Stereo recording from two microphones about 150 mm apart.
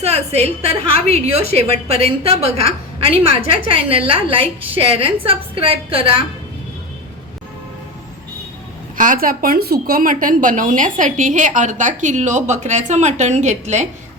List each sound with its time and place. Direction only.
0.0 s a woman's voice: 45° right (ahead or behind)
9.0 s a woman's voice: 65° right (ahead or behind)